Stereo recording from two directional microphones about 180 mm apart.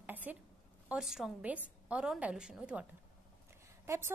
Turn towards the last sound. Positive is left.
turn(degrees=-15)  # may be behind; listen again after turning